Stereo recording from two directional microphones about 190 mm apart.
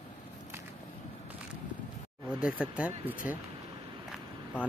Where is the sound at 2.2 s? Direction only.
5° right (ahead or behind).